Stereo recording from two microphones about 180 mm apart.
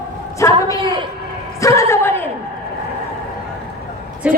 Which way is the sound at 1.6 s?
15° left (ahead or behind).